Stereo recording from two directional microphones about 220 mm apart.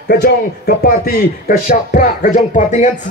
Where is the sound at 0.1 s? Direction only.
45° left (ahead or behind).